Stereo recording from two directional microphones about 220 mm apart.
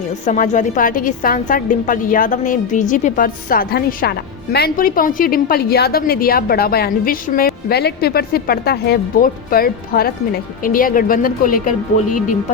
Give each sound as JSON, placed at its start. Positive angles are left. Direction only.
{"t": 0.3, "sound": "a woman's voice", "side_deg": 35}